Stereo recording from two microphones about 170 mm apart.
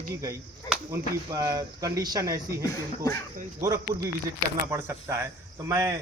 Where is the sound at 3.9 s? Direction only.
25° right (ahead or behind).